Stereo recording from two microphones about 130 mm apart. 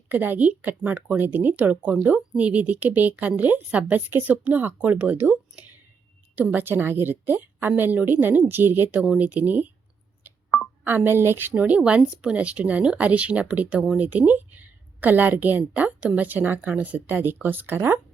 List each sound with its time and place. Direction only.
0.1 s speech: 15° right (ahead or behind)
10.8 s speech: 15° right (ahead or behind)